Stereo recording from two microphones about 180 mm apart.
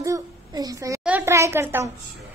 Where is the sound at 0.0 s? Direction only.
20° right (ahead or behind).